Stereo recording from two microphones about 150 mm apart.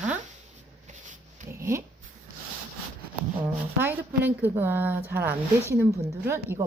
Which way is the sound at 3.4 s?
15° right (ahead or behind).